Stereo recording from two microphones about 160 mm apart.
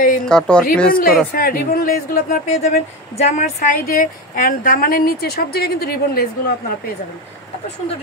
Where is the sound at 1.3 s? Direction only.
65° left (ahead or behind).